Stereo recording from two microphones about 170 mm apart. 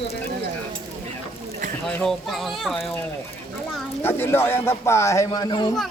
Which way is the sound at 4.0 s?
15° left (ahead or behind).